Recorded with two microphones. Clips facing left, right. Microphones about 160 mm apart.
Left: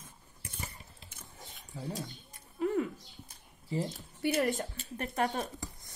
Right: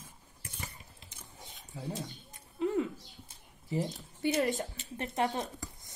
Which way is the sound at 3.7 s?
20° right (ahead or behind).